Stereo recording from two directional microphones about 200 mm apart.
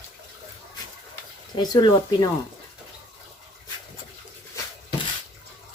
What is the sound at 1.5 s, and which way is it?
Speech, 20° left (ahead or behind).